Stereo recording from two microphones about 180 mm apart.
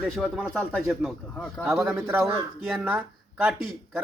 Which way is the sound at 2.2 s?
Centre (ahead or behind).